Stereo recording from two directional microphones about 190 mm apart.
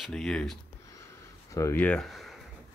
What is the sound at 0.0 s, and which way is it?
Speech, 5° left (ahead or behind).